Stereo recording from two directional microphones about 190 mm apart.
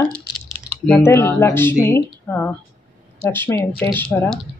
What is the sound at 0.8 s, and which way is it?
Speech, 10° left (ahead or behind).